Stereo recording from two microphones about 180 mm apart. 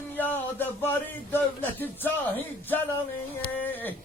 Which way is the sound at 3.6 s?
10° left (ahead or behind).